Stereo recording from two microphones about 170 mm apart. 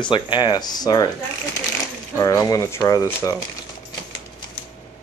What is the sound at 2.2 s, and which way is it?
Speech, 20° left (ahead or behind).